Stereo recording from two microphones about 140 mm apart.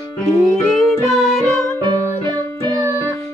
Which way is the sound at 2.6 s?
20° right (ahead or behind).